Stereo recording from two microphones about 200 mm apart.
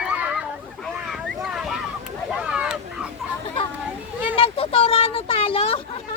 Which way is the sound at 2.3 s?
5° right (ahead or behind).